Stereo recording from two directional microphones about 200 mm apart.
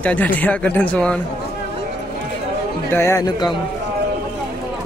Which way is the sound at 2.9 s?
15° left (ahead or behind).